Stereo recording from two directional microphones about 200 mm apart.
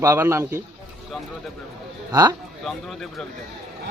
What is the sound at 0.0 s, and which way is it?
Speech, 15° right (ahead or behind).